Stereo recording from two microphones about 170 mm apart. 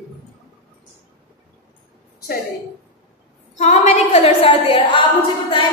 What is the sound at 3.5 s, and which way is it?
A woman's voice, 40° left (ahead or behind).